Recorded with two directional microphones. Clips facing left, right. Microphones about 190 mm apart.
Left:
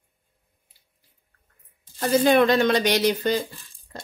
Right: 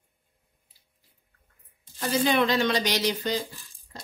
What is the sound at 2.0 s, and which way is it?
A woman's voice, 50° left (ahead or behind).